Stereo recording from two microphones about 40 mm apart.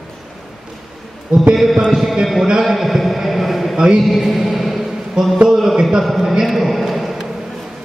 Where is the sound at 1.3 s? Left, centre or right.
Right.